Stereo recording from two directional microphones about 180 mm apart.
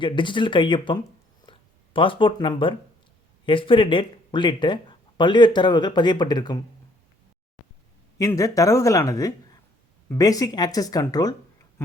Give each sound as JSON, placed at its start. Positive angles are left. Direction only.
{"t": 0.0, "sound": "speech", "side_deg": 25}
{"t": 8.2, "sound": "speech", "side_deg": 20}